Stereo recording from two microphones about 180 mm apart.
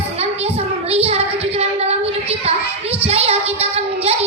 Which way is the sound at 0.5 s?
35° right (ahead or behind).